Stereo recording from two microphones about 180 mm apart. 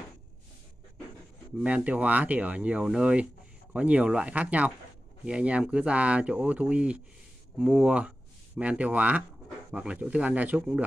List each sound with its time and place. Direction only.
1.6 s speech: 10° right (ahead or behind)